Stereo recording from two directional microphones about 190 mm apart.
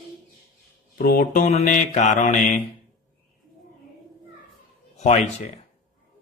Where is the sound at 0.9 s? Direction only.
50° left (ahead or behind).